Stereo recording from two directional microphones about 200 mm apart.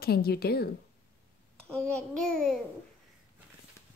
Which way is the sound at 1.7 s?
5° left (ahead or behind).